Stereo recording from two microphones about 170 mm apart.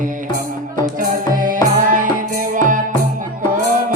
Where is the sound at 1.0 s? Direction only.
50° right (ahead or behind).